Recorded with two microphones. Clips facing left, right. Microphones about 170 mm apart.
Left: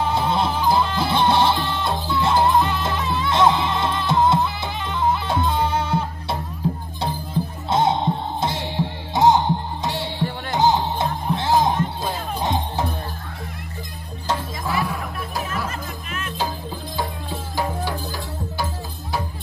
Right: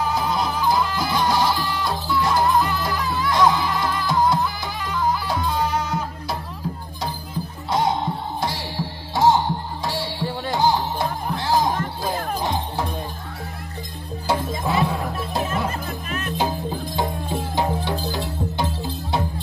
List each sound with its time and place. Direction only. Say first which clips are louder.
0.0 s music: left 2 dB; 25° left (ahead or behind)
14.7 s music: right 2 dB; 25° right (ahead or behind)
16.1 s music: right 4 dB; 40° right (ahead or behind)
16.9 s music: right 2 dB; 20° right (ahead or behind)